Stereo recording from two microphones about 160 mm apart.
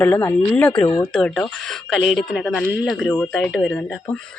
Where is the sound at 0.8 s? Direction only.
25° left (ahead or behind).